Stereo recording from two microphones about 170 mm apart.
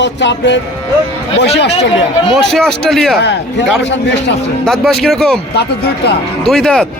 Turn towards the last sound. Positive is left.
turn(degrees=5)  # may be behind; listen again after turning